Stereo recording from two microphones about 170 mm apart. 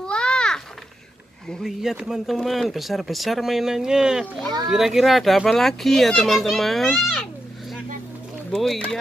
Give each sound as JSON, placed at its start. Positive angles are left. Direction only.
{"t": 0.0, "sound": "a sound", "side_deg": 5}
{"t": 1.5, "sound": "speech", "side_deg": 0}
{"t": 8.5, "sound": "speech", "side_deg": 0}